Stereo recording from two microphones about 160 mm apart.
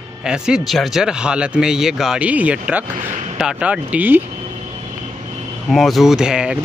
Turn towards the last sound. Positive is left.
turn(degrees=-5)  # may be behind; listen again after turning